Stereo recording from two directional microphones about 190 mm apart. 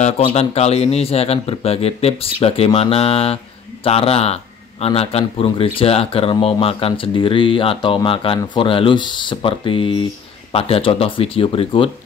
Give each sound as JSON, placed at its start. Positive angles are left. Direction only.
{"t": 0.0, "sound": "a man's voice", "side_deg": 35}